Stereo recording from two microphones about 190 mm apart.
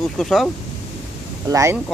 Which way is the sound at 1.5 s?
15° right (ahead or behind).